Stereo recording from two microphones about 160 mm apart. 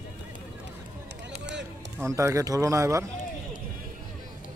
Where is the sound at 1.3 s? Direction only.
90° right.